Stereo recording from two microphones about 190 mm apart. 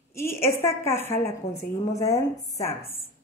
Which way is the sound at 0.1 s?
15° left (ahead or behind).